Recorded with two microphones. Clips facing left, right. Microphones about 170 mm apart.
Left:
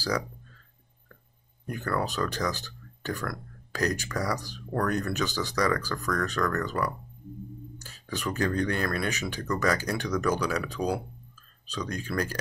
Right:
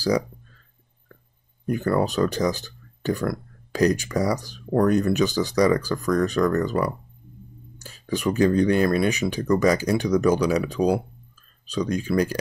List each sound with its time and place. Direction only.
1.7 s speech: 20° right (ahead or behind)